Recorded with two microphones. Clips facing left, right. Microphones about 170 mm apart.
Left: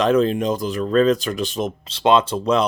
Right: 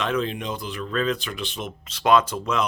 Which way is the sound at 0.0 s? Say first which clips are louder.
Left 9 dB; 40° left (ahead or behind).